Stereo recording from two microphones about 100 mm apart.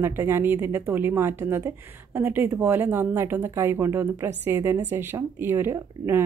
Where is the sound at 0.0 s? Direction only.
25° right (ahead or behind).